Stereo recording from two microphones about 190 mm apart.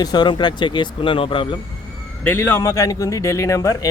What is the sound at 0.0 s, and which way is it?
Speech, 20° left (ahead or behind).